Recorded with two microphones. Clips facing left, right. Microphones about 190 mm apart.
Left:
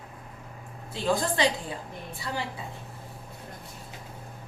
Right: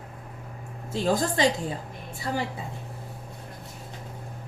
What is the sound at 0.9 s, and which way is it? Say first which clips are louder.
Speech: right 2 dB; 45° right (ahead or behind).